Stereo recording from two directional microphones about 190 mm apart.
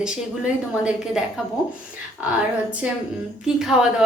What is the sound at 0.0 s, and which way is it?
Speech, 5° right (ahead or behind).